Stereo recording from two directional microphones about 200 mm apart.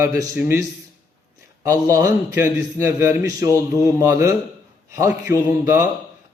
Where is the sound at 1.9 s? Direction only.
15° right (ahead or behind).